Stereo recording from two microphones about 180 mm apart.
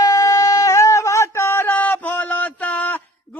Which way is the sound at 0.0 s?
15° left (ahead or behind).